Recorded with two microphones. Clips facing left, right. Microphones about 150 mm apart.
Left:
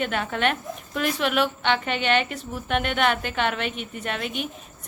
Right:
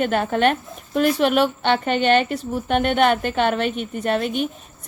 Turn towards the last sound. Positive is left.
turn(degrees=-40)  # may be behind; listen again after turning